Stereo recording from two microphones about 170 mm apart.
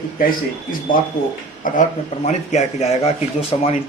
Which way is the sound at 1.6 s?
55° left (ahead or behind).